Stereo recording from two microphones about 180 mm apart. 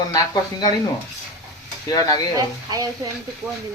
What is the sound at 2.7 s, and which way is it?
Speech, 20° right (ahead or behind).